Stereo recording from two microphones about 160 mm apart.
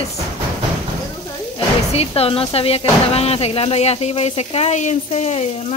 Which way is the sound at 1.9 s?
40° left (ahead or behind).